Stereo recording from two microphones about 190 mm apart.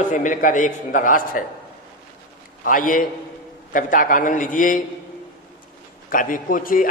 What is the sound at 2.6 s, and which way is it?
A man's voice, 45° left (ahead or behind).